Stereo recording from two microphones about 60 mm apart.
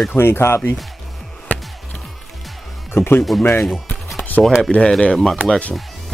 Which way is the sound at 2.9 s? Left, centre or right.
Left.